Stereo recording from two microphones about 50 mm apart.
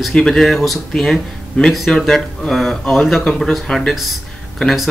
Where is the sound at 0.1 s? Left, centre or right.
Centre.